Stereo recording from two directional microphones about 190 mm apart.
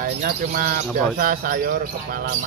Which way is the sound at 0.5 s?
50° right (ahead or behind).